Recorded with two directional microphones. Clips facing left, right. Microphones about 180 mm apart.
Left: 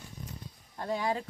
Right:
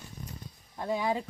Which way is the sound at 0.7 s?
5° right (ahead or behind).